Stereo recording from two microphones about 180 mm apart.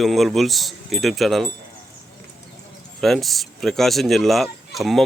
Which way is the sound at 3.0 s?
Centre (ahead or behind).